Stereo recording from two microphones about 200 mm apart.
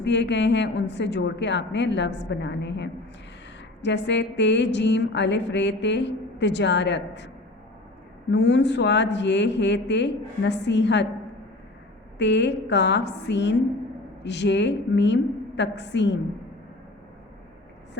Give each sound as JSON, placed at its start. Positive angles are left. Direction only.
{"t": 0.0, "sound": "a woman's voice", "side_deg": 60}
{"t": 8.3, "sound": "a woman's voice", "side_deg": 60}
{"t": 12.2, "sound": "a woman's voice", "side_deg": 60}